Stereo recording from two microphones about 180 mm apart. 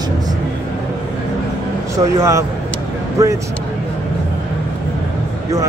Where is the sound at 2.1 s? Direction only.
15° right (ahead or behind).